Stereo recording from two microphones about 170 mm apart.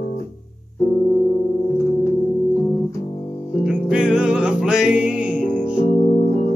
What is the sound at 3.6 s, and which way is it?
Music, 5° right (ahead or behind).